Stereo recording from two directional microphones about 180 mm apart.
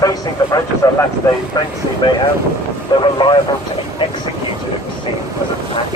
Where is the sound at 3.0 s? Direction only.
25° left (ahead or behind).